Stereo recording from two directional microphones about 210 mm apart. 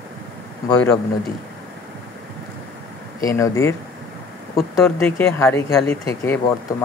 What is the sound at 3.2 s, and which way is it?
Speech, 15° left (ahead or behind).